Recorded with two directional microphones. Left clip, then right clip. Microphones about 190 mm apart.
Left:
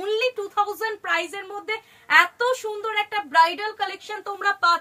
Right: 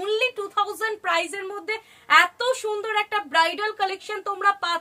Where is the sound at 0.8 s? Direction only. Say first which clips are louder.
Right 1 dB; 50° right (ahead or behind).